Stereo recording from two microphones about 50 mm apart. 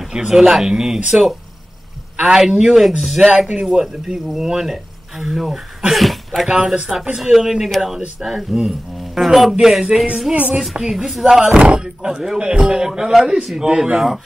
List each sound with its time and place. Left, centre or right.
0.1 s speech: centre
2.3 s speech: centre
6.4 s speech: centre
10.3 s a woman's voice: right
10.6 s speech: centre
11.6 s speech: centre
13.9 s speech: centre